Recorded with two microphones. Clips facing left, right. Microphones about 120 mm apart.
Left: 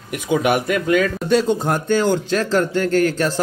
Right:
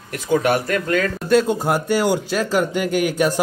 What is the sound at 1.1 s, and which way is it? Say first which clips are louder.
Speech: even; centre (ahead or behind).